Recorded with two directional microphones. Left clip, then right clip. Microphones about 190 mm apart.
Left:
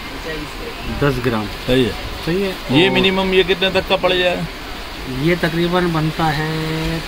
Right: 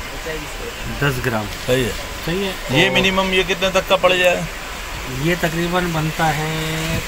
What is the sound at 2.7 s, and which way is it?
A man's voice, 20° left (ahead or behind).